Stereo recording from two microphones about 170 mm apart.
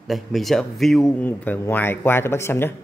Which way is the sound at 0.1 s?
Centre (ahead or behind).